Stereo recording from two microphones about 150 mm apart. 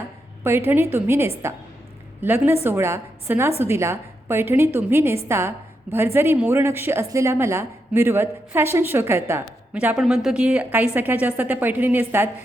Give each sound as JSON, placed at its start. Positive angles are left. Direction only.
{"t": 0.4, "sound": "a woman's voice", "side_deg": -15}